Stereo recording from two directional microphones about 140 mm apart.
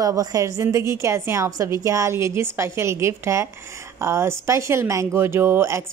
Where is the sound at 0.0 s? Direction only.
25° right (ahead or behind).